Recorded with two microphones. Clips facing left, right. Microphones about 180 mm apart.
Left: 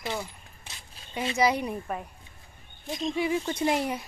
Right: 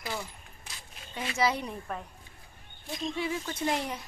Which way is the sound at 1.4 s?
15° left (ahead or behind).